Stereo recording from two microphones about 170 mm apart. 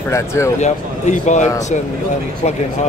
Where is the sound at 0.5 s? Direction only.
45° left (ahead or behind).